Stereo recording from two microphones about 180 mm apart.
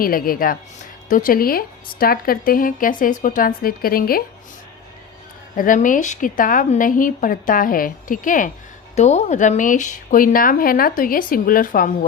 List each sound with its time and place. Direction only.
0.0 s a woman's voice: 55° left (ahead or behind)
5.5 s a woman's voice: 45° left (ahead or behind)